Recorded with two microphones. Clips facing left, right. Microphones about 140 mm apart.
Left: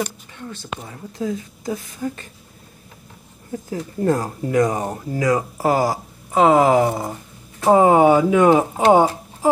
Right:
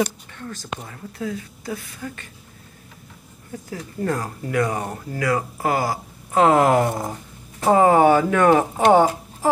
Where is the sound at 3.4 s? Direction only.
25° left (ahead or behind).